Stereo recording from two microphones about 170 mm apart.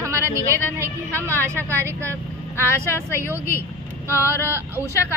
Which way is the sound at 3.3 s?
15° right (ahead or behind).